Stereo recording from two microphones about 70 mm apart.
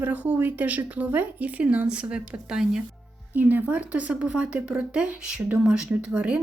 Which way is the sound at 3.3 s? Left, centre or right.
Right.